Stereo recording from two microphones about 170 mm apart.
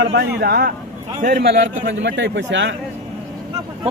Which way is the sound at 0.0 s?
75° right (ahead or behind).